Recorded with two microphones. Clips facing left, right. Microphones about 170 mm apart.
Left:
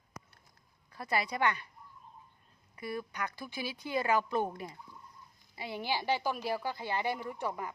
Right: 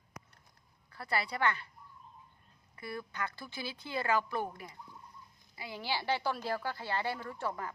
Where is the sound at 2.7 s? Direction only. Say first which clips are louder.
Left 2 dB; 15° left (ahead or behind).